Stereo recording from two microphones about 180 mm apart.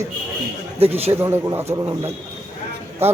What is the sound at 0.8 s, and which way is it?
Speech, 35° right (ahead or behind).